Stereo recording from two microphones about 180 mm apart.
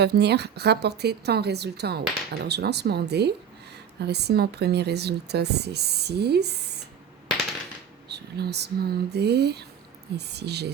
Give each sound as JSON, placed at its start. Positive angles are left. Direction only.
{"t": 0.0, "sound": "a woman's voice", "side_deg": -65}
{"t": 8.1, "sound": "speech", "side_deg": -65}